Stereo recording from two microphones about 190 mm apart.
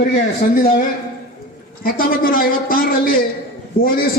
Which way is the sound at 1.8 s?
50° left (ahead or behind).